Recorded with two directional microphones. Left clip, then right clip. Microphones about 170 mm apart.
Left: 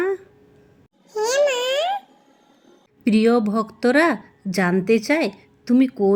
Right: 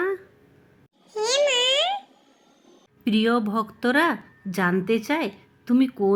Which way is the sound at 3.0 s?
15° left (ahead or behind).